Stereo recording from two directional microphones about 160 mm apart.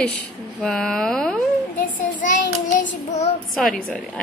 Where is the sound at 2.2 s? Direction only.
55° left (ahead or behind).